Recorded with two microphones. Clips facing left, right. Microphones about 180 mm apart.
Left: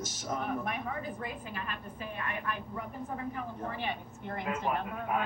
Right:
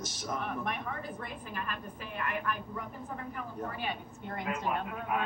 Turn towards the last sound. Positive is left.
turn(degrees=25)  # may be behind; listen again after turning